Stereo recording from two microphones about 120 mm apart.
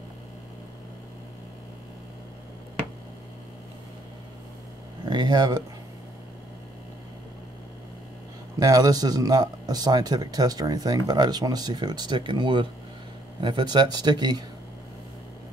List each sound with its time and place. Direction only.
5.0 s speech: 35° right (ahead or behind)
8.5 s speech: 30° right (ahead or behind)